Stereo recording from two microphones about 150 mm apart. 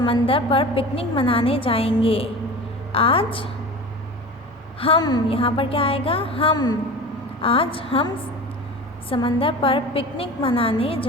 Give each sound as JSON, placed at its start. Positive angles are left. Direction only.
{"t": 0.0, "sound": "a woman's voice", "side_deg": 35}
{"t": 4.8, "sound": "a woman's voice", "side_deg": 35}